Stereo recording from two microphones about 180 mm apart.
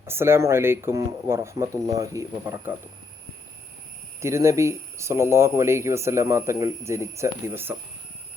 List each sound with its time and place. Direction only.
0.0 s speech: 15° right (ahead or behind)
4.2 s speech: 15° right (ahead or behind)